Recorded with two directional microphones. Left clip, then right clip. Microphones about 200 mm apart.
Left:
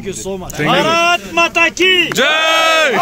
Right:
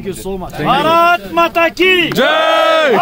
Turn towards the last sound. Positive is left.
turn(degrees=-15)  # may be behind; listen again after turning